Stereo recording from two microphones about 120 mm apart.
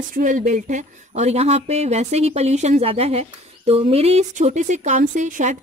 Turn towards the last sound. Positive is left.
turn(degrees=-90)